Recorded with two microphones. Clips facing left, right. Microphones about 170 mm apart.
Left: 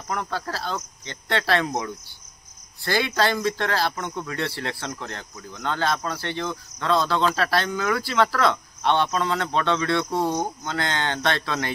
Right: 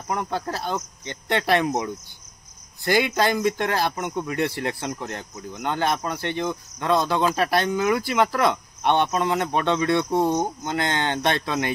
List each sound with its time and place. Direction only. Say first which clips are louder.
0.1 s speech: right 2 dB; 20° right (ahead or behind)